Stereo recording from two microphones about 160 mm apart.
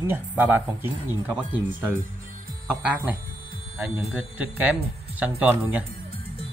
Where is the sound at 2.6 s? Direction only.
10° right (ahead or behind).